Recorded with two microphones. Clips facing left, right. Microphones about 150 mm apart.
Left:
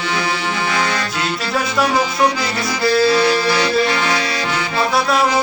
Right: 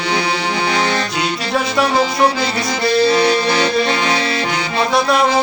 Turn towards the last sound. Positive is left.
turn(degrees=-20)  # may be behind; listen again after turning